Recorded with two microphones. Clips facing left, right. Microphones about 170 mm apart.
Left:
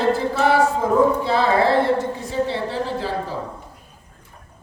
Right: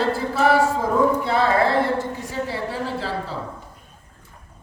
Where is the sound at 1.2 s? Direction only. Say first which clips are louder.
Left 1 dB; 25° left (ahead or behind).